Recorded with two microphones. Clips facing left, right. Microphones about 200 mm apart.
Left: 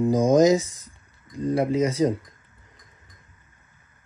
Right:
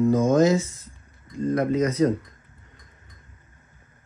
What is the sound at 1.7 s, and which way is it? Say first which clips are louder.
Mantra: right 2 dB; 30° left (ahead or behind).